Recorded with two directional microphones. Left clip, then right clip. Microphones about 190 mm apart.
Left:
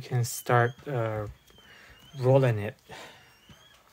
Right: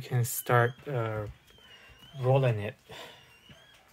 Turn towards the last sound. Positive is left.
turn(degrees=25)  # may be behind; listen again after turning